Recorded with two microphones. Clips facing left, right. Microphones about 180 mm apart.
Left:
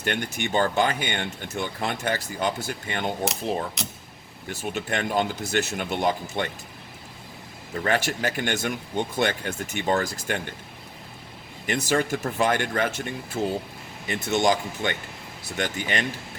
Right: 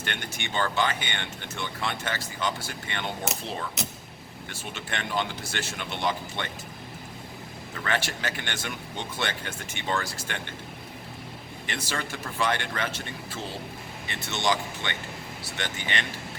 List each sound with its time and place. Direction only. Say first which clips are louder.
0.0 s speech: left 7 dB; 45° left (ahead or behind)
7.7 s speech: left 5 dB; 40° left (ahead or behind)
11.6 s speech: left 10 dB; 45° left (ahead or behind)